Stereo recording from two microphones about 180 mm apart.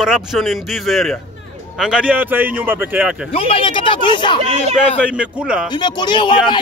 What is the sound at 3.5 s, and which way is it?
Speech, 25° left (ahead or behind).